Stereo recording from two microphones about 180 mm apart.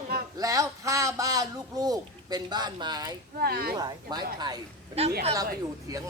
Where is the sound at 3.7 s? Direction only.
20° right (ahead or behind).